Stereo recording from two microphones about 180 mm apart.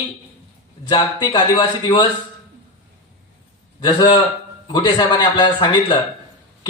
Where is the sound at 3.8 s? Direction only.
25° left (ahead or behind).